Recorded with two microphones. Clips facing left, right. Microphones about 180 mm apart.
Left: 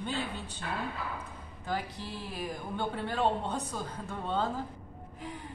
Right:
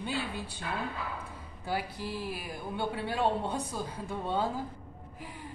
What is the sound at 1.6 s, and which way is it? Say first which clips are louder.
Speech: right 1 dB; 10° right (ahead or behind).